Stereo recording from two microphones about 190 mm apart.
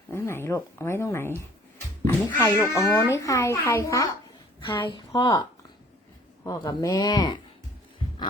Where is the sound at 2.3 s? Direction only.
15° left (ahead or behind).